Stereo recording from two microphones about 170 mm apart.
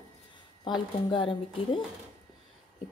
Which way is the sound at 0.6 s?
25° left (ahead or behind).